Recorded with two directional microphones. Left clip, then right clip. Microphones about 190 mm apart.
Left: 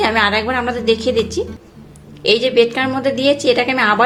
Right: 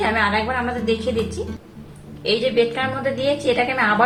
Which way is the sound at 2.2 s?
55° left (ahead or behind).